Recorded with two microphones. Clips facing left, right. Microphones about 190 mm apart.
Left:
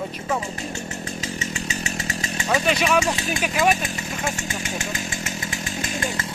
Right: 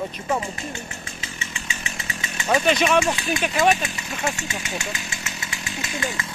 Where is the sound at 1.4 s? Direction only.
40° left (ahead or behind).